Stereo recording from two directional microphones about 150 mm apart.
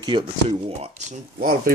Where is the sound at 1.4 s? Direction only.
70° right (ahead or behind).